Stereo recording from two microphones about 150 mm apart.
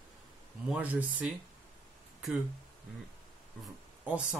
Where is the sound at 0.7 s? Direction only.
10° right (ahead or behind).